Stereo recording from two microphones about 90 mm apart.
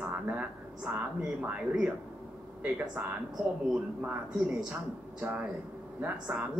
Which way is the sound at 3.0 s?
20° right (ahead or behind).